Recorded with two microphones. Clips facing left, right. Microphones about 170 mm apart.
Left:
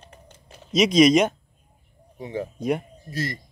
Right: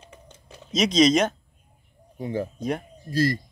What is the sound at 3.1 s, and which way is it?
Speech, 20° left (ahead or behind).